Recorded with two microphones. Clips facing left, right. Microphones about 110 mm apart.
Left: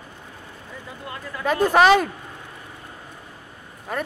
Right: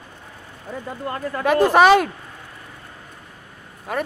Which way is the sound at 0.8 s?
50° right (ahead or behind).